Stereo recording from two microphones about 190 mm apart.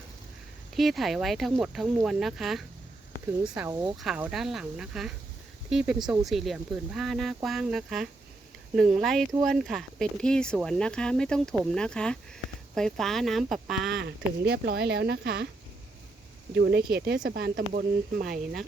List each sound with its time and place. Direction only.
0.8 s speech: centre (ahead or behind)
3.7 s speech: 15° right (ahead or behind)
4.0 s speech: 5° right (ahead or behind)
14.4 s speech: 60° right (ahead or behind)
16.6 s speech: 60° right (ahead or behind)